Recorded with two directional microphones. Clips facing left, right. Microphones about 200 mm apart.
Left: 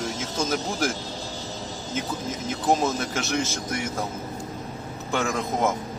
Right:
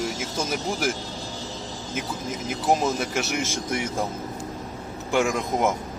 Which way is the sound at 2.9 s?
10° right (ahead or behind).